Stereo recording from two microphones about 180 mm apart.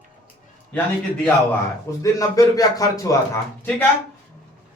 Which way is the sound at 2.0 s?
20° left (ahead or behind).